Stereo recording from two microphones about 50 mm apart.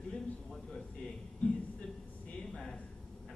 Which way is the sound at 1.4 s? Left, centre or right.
Left.